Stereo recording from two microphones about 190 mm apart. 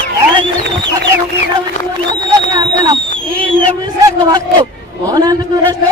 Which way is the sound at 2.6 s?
20° right (ahead or behind).